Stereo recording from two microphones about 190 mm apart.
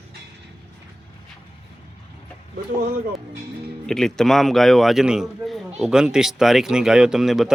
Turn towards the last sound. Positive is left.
turn(degrees=0)  # may be behind; listen again after turning